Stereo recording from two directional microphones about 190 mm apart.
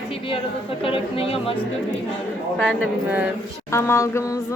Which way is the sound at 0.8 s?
30° left (ahead or behind).